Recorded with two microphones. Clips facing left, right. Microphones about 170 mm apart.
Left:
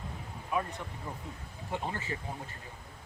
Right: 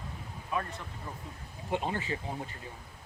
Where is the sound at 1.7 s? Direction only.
20° right (ahead or behind).